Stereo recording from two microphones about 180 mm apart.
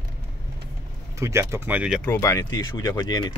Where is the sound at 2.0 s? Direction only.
15° left (ahead or behind).